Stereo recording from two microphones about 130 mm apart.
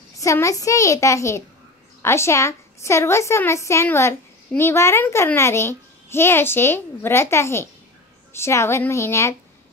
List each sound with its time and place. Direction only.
0.2 s a woman's voice: 25° left (ahead or behind)